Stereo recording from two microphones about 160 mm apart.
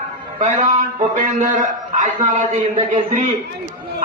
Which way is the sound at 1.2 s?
50° right (ahead or behind).